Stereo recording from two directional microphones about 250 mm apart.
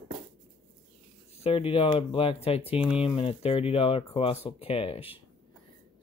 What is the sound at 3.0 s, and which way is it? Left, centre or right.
Speech, left.